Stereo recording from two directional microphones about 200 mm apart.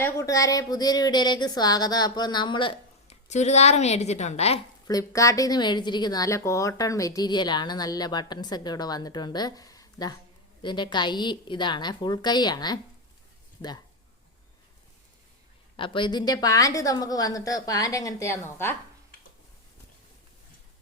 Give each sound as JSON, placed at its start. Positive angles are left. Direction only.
{"t": 0.0, "sound": "a woman's voice", "side_deg": 15}
{"t": 4.9, "sound": "a woman's voice", "side_deg": 15}
{"t": 15.7, "sound": "a woman's voice", "side_deg": 25}